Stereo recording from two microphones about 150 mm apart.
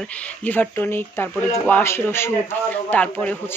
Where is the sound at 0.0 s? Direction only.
10° left (ahead or behind).